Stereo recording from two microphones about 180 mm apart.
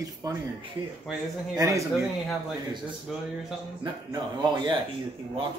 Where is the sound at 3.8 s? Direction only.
25° right (ahead or behind).